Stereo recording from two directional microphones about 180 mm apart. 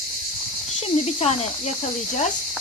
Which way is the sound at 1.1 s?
35° left (ahead or behind).